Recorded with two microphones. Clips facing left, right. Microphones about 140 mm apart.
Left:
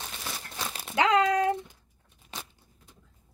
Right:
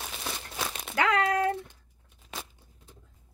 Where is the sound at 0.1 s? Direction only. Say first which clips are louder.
Right 2 dB; 5° right (ahead or behind).